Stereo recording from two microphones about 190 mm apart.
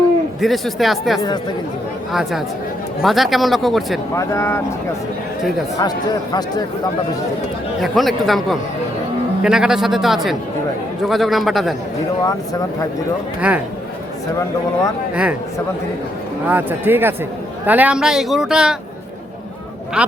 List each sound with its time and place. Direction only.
0.4 s speech: centre (ahead or behind)
3.0 s speech: centre (ahead or behind)
4.1 s speech: 15° left (ahead or behind)
6.3 s speech: 20° left (ahead or behind)
7.8 s speech: centre (ahead or behind)
12.2 s speech: 20° left (ahead or behind)
13.5 s speech: 5° right (ahead or behind)
15.1 s speech: 5° right (ahead or behind)
16.5 s speech: 10° right (ahead or behind)
20.0 s speech: 5° right (ahead or behind)